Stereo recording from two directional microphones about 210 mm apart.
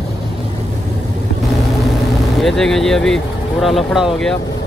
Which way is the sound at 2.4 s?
Centre (ahead or behind).